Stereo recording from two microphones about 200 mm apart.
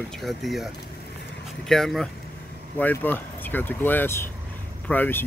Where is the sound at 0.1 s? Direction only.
Centre (ahead or behind).